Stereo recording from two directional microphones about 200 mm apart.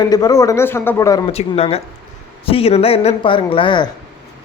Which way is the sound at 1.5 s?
30° left (ahead or behind).